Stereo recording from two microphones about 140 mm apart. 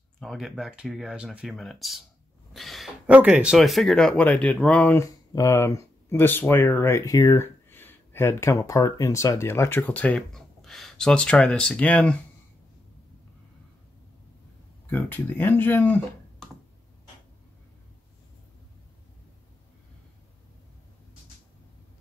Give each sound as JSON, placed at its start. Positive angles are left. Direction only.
{"t": 0.2, "sound": "speech", "side_deg": 0}
{"t": 2.5, "sound": "gasp", "side_deg": 0}
{"t": 3.1, "sound": "speech", "side_deg": -10}
{"t": 5.0, "sound": "speech", "side_deg": 25}
{"t": 14.9, "sound": "speech", "side_deg": 15}